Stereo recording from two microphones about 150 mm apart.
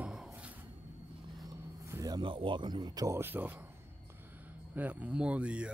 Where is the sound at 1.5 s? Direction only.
20° right (ahead or behind).